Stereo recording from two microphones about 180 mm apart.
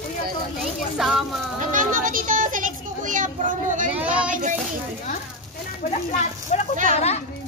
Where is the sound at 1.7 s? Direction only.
50° right (ahead or behind).